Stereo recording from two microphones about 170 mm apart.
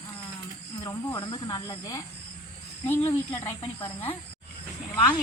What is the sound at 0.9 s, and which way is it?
Speech, 25° left (ahead or behind).